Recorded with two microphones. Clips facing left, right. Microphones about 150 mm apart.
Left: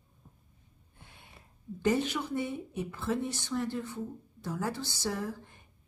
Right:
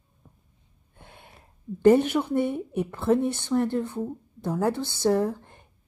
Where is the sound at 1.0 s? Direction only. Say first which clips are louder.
Right 7 dB; 55° right (ahead or behind).